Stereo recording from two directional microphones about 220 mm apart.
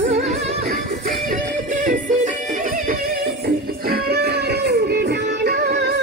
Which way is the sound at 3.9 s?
45° right (ahead or behind).